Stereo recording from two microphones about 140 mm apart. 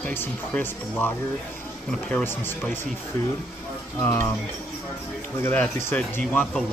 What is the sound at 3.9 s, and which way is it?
Speech, 15° left (ahead or behind).